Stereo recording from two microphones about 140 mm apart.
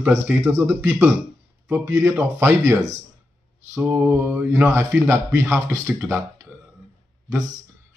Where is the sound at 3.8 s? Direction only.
15° right (ahead or behind).